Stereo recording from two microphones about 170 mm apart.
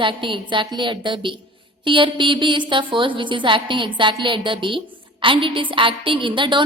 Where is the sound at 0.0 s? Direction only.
30° right (ahead or behind).